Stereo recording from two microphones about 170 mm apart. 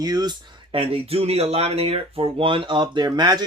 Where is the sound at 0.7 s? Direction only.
35° right (ahead or behind).